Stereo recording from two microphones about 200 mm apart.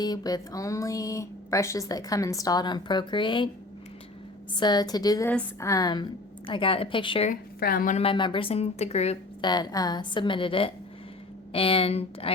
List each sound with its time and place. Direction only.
0.0 s speech: 20° left (ahead or behind)
4.5 s a woman's voice: 20° left (ahead or behind)
7.3 s a woman's voice: 45° left (ahead or behind)
8.0 s a woman's voice: 25° left (ahead or behind)
9.5 s a woman's voice: 20° left (ahead or behind)